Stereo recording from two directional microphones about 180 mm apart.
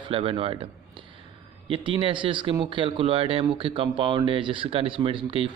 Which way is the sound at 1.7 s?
30° right (ahead or behind).